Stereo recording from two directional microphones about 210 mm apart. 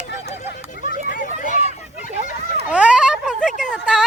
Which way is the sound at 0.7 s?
40° left (ahead or behind).